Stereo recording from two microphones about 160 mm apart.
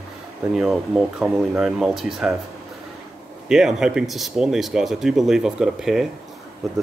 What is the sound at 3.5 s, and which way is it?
Speech, 5° right (ahead or behind).